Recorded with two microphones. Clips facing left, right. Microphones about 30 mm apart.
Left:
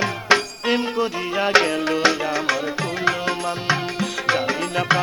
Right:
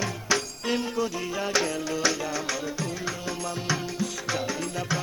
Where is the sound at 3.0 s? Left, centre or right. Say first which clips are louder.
Left 10 dB; left.